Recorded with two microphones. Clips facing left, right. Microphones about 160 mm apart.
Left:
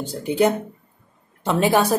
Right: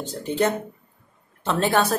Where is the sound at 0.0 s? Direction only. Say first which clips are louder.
Left 4 dB; 10° left (ahead or behind).